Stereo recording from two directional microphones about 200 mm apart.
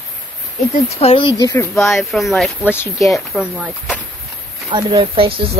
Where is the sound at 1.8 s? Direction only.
Centre (ahead or behind).